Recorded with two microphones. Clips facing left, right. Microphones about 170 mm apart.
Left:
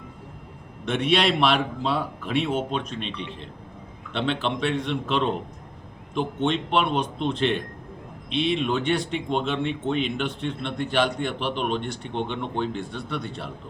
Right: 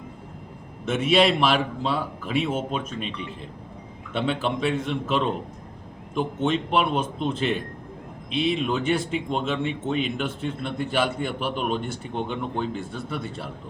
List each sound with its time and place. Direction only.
0.9 s speech: 5° right (ahead or behind)